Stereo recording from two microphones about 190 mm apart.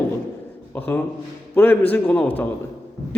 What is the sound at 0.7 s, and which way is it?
A man's voice, 10° left (ahead or behind).